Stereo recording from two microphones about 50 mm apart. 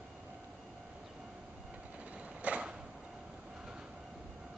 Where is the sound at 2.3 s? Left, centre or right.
Right.